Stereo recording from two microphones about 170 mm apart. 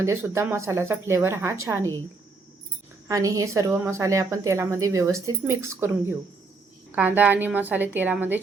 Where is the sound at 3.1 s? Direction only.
20° right (ahead or behind).